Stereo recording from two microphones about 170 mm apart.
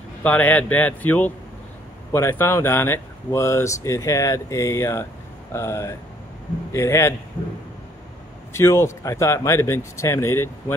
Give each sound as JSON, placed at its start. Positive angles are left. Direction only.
{"t": 0.2, "sound": "speech", "side_deg": 10}
{"t": 8.5, "sound": "speech", "side_deg": 15}